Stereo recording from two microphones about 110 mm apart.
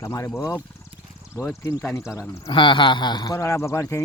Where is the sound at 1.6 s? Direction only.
30° left (ahead or behind).